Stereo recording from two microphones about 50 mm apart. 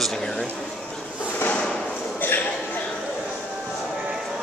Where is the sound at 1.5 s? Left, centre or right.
Centre.